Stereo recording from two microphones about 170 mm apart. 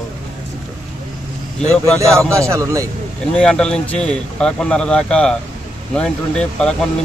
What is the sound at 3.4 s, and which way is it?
A man's voice, 5° left (ahead or behind).